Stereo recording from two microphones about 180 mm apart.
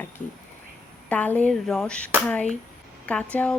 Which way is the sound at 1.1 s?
10° left (ahead or behind).